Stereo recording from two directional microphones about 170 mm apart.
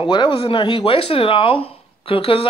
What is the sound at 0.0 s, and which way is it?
A man's voice, 30° left (ahead or behind).